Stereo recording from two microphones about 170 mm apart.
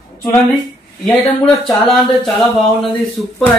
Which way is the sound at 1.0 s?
Centre (ahead or behind).